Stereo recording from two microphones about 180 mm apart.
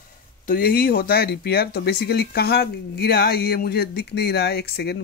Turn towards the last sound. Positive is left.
turn(degrees=65)  # may be behind; listen again after turning